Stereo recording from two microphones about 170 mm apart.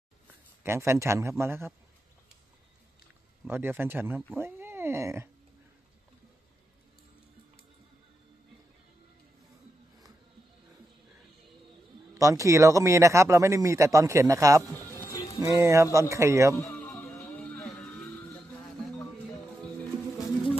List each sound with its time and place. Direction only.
0.7 s speech: 15° right (ahead or behind)
3.4 s speech: 10° right (ahead or behind)
12.2 s speech: 20° right (ahead or behind)
15.0 s music: 20° left (ahead or behind)
15.4 s speech: 20° right (ahead or behind)
16.6 s music: 10° left (ahead or behind)